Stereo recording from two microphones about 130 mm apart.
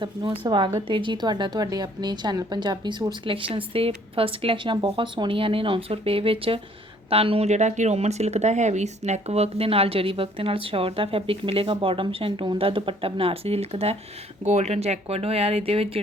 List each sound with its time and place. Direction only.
0.0 s a woman's voice: 40° right (ahead or behind)